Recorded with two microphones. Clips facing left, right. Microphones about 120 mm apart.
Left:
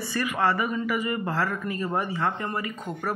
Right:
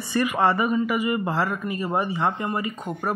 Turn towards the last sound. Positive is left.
turn(degrees=-20)  # may be behind; listen again after turning